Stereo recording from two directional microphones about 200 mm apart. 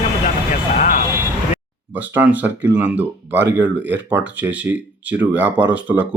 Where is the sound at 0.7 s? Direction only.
40° left (ahead or behind).